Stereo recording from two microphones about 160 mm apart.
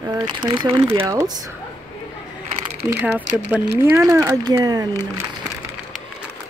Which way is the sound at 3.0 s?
10° right (ahead or behind).